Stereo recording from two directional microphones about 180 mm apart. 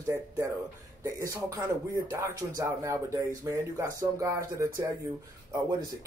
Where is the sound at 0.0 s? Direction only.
15° right (ahead or behind).